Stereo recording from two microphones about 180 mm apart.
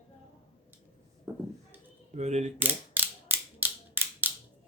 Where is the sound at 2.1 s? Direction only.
40° right (ahead or behind).